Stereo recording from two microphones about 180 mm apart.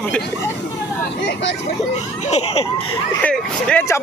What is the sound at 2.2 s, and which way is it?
Speech, 35° left (ahead or behind).